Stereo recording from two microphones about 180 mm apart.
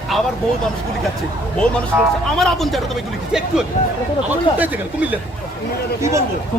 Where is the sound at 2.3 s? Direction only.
Centre (ahead or behind).